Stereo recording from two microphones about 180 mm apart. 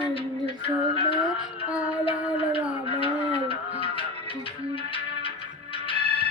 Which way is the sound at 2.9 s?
30° left (ahead or behind).